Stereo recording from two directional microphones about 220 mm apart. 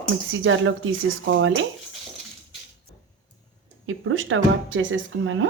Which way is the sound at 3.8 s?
65° right (ahead or behind).